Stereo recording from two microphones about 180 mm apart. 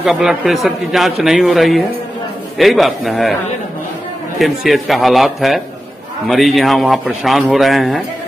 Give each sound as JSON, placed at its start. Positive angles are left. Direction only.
{"t": 0.0, "sound": "a man's voice", "side_deg": -5}
{"t": 4.4, "sound": "a man's voice", "side_deg": 0}